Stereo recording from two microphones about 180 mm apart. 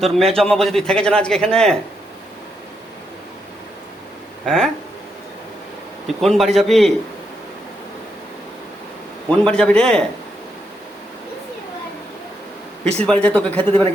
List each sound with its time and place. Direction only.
0.0 s a man's voice: centre (ahead or behind)
4.4 s a man's voice: centre (ahead or behind)
6.1 s a man's voice: centre (ahead or behind)
9.3 s a man's voice: 5° left (ahead or behind)
12.8 s speech: 35° right (ahead or behind)
13.1 s speech: 5° left (ahead or behind)